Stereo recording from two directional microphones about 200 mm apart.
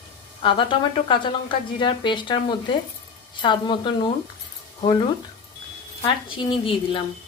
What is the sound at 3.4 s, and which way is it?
Speech, 25° left (ahead or behind).